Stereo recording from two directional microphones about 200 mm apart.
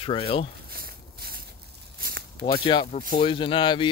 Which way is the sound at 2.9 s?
45° left (ahead or behind).